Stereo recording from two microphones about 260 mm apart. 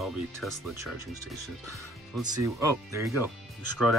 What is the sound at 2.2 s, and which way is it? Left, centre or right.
Speech, centre.